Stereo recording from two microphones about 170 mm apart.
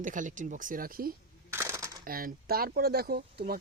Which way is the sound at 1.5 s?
15° right (ahead or behind).